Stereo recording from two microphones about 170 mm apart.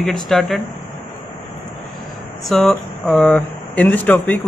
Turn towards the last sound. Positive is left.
turn(degrees=10)  # may be behind; listen again after turning